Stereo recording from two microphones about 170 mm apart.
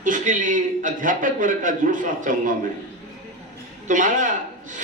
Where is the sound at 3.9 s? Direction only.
50° right (ahead or behind).